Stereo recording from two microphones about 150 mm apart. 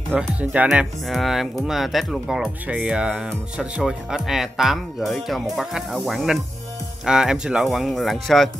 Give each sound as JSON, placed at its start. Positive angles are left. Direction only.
{"t": 0.1, "sound": "speech", "side_deg": -10}